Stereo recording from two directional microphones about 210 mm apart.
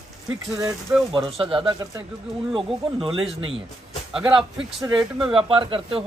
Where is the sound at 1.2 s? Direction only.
25° right (ahead or behind).